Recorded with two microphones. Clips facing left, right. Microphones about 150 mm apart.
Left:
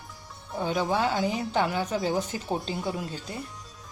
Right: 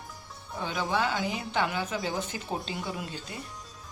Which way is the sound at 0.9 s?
35° left (ahead or behind).